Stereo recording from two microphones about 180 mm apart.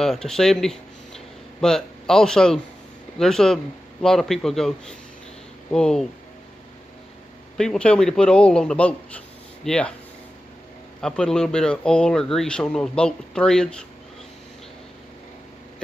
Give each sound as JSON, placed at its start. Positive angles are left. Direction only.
{"t": 0.0, "sound": "speech", "side_deg": 5}
{"t": 7.5, "sound": "speech", "side_deg": 5}
{"t": 11.0, "sound": "speech", "side_deg": 5}